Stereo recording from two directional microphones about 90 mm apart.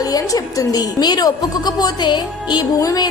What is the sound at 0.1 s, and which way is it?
Speech, 45° left (ahead or behind).